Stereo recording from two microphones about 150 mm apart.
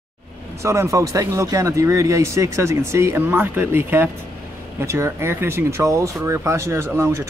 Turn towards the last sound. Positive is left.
turn(degrees=-20)  # may be behind; listen again after turning